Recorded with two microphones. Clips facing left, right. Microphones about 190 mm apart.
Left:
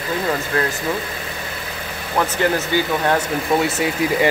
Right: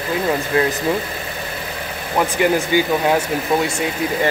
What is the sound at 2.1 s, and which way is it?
Speech, 15° right (ahead or behind).